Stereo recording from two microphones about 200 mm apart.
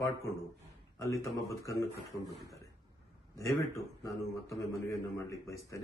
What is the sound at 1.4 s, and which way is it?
Speech, 15° left (ahead or behind).